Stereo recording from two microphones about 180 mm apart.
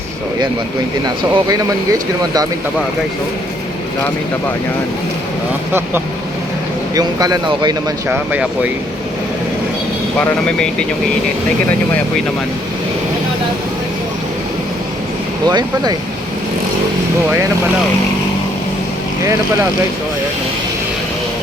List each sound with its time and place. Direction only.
1.0 s speech: 20° right (ahead or behind)
6.9 s speech: 20° right (ahead or behind)
8.0 s speech: 10° right (ahead or behind)
10.2 s speech: 5° left (ahead or behind)
15.4 s speech: 25° right (ahead or behind)